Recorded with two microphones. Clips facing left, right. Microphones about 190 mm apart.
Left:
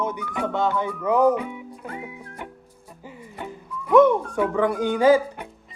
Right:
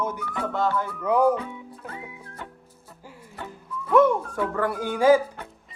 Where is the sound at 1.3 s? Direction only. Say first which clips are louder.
Left 3 dB; 15° left (ahead or behind).